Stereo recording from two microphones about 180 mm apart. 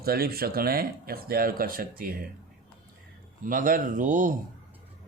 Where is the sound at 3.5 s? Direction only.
50° right (ahead or behind).